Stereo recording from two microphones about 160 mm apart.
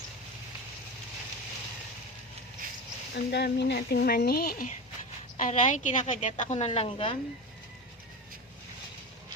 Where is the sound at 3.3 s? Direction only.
90° left; by 4.7 s 65° left (ahead or behind).